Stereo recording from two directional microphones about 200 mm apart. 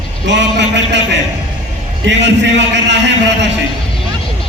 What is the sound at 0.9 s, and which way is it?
A man's voice, 65° right (ahead or behind).